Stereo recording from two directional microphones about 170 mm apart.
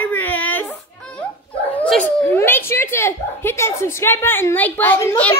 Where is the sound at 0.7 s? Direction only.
5° left (ahead or behind).